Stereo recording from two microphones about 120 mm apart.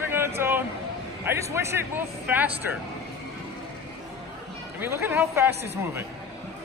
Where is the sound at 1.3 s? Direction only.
20° right (ahead or behind).